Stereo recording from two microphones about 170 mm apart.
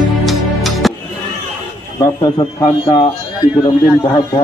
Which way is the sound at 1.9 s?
20° left (ahead or behind).